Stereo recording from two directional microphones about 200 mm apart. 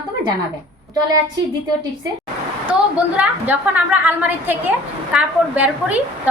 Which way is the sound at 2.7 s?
5° right (ahead or behind).